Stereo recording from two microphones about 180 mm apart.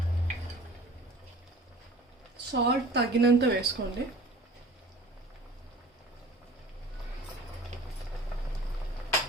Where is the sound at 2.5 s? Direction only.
70° right (ahead or behind).